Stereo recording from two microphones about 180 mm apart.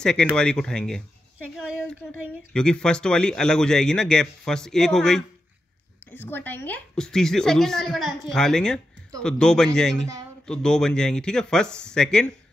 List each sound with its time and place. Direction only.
0.0 s a woman's voice: 5° left (ahead or behind)
2.5 s a woman's voice: 5° left (ahead or behind)